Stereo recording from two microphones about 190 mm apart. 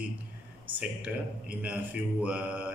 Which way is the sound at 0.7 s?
5° right (ahead or behind).